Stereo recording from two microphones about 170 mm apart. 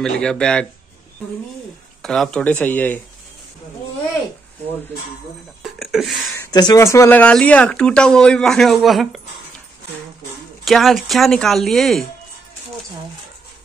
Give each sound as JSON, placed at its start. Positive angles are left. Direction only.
{"t": 0.0, "sound": "speech", "side_deg": 5}
{"t": 2.0, "sound": "speech", "side_deg": 5}
{"t": 5.6, "sound": "speech", "side_deg": 0}
{"t": 6.3, "sound": "speech", "side_deg": 20}
{"t": 10.6, "sound": "speech", "side_deg": 0}